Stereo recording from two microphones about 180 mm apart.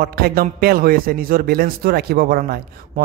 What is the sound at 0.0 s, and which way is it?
A man's voice, 55° right (ahead or behind).